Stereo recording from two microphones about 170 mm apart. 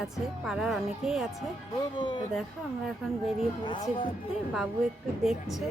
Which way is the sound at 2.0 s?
25° left (ahead or behind).